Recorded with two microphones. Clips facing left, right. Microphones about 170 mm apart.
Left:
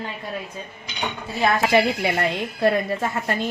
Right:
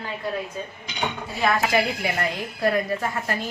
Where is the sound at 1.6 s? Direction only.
25° left (ahead or behind).